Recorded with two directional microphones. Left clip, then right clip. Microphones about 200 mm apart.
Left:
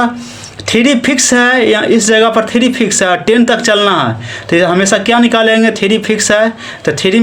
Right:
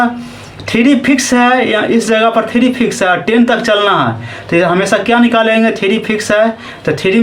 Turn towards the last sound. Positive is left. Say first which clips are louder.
# left 1 dB
turn(degrees=45)  # may be behind; listen again after turning